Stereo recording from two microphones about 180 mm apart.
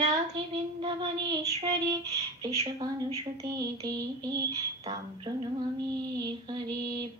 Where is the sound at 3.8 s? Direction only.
20° right (ahead or behind).